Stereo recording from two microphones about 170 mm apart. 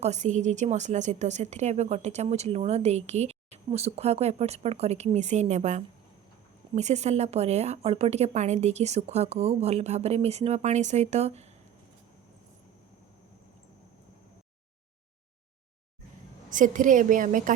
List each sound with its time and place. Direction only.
0.0 s a woman's voice: 45° right (ahead or behind)
16.5 s a woman's voice: 50° right (ahead or behind)